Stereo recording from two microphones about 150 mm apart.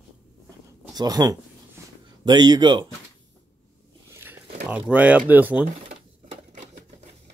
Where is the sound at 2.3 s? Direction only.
30° right (ahead or behind).